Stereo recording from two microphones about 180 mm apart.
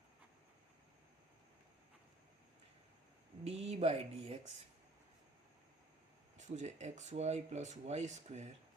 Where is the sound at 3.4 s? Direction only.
35° right (ahead or behind).